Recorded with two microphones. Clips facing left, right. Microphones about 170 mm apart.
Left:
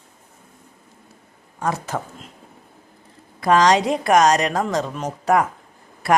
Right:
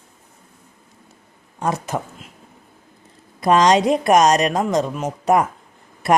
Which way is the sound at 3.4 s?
20° right (ahead or behind).